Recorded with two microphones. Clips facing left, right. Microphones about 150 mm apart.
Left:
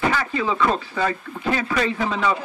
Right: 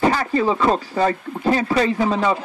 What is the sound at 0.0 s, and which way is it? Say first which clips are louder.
Speech: right 5 dB; 35° right (ahead or behind).